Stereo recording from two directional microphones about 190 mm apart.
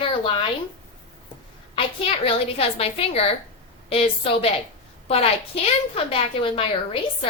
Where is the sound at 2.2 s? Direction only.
30° left (ahead or behind).